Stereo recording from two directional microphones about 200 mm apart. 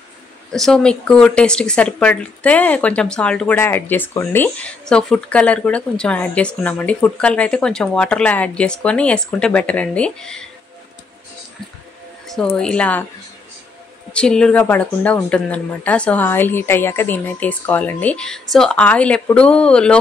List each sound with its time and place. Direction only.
0.5 s speech: centre (ahead or behind)
12.3 s speech: 5° left (ahead or behind)
14.1 s speech: 5° left (ahead or behind)